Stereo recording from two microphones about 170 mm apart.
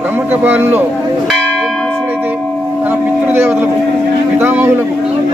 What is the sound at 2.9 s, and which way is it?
Speech, 10° right (ahead or behind).